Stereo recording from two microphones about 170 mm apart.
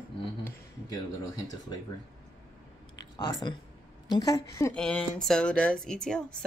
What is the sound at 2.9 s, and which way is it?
Speech, 25° left (ahead or behind).